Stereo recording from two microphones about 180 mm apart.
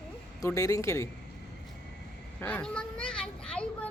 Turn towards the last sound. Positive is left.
turn(degrees=5)  # may be behind; listen again after turning